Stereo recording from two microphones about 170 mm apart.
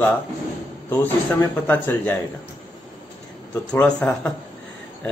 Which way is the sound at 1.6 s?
10° left (ahead or behind).